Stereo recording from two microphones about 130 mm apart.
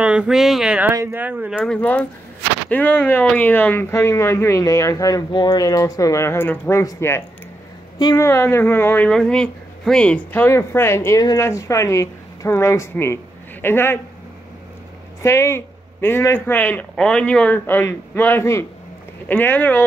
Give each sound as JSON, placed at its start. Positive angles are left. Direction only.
{"t": 0.0, "sound": "speech", "side_deg": -10}
{"t": 1.5, "sound": "speech", "side_deg": 5}
{"t": 15.2, "sound": "speech", "side_deg": 20}